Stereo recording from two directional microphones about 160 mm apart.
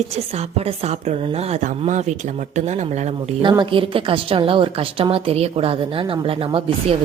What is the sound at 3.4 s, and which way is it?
A woman's voice, 30° right (ahead or behind).